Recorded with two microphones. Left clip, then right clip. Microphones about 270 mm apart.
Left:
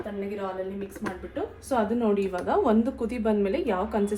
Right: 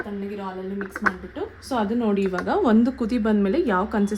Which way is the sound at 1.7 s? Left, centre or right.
Right.